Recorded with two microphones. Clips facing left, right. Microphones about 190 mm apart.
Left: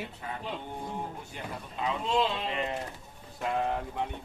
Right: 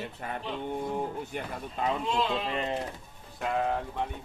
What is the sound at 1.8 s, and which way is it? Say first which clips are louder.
Speech: right 3 dB; 50° right (ahead or behind).